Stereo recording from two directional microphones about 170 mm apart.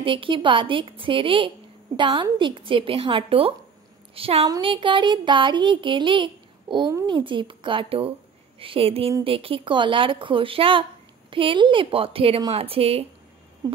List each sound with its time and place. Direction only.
0.0 s a woman's voice: 30° right (ahead or behind)